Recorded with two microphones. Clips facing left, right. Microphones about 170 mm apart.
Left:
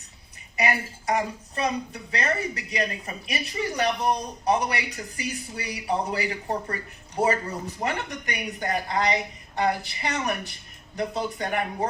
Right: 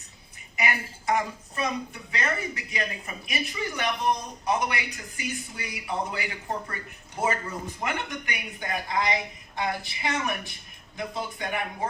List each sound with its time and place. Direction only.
0.5 s a woman's voice: 35° left (ahead or behind)